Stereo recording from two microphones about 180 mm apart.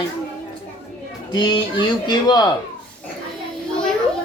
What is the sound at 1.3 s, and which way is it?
Speech, 25° left (ahead or behind).